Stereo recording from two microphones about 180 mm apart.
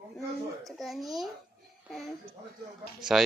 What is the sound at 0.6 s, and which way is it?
Speech, centre (ahead or behind).